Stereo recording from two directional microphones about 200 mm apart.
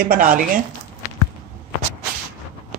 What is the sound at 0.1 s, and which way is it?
Speech, 45° right (ahead or behind).